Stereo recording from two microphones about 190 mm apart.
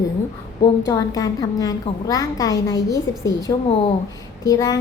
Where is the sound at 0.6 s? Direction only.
20° left (ahead or behind).